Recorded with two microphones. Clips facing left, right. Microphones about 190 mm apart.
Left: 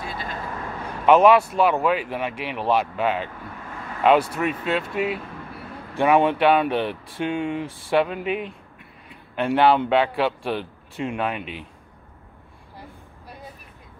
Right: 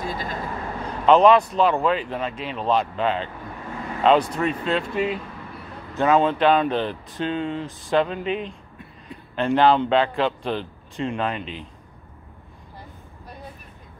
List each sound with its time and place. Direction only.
0.0 s vehicle: 40° right (ahead or behind)
0.8 s speech: 10° left (ahead or behind)